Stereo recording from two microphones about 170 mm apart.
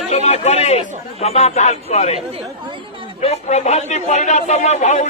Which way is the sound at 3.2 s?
40° left (ahead or behind).